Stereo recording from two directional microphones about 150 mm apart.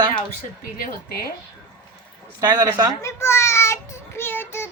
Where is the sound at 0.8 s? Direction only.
70° left (ahead or behind).